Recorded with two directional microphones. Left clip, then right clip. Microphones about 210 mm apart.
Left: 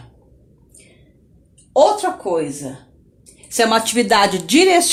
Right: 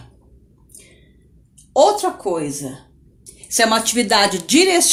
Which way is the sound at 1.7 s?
25° left (ahead or behind).